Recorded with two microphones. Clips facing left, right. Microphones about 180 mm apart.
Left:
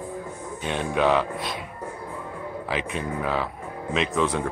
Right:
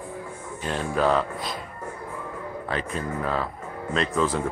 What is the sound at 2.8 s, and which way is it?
Speech, 80° left.